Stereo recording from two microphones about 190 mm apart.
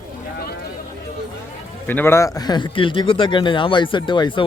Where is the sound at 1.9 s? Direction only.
10° left (ahead or behind).